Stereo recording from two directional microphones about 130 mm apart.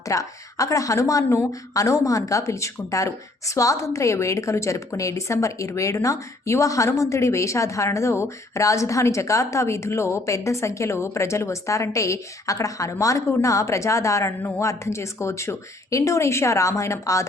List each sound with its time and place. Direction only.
0.1 s a woman's voice: 25° left (ahead or behind)